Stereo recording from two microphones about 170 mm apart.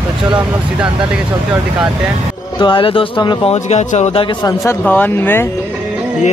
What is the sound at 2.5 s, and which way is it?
Speech, 30° left (ahead or behind).